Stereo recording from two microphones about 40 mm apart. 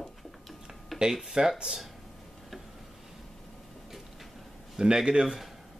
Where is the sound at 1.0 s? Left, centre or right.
Centre.